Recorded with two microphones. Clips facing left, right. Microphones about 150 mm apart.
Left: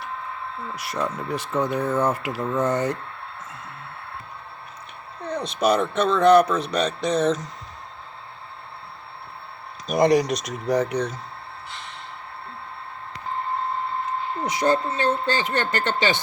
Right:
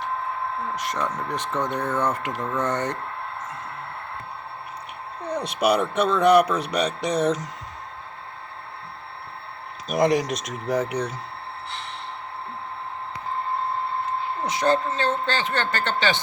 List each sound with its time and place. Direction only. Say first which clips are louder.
0.8 s speech: left 3 dB; 10° left (ahead or behind)
5.2 s speech: even; 10° right (ahead or behind)
9.8 s speech: left 2 dB; centre (ahead or behind)
14.5 s speech: even; 15° left (ahead or behind)